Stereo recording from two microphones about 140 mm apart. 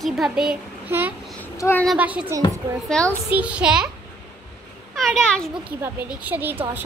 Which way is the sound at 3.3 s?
10° right (ahead or behind).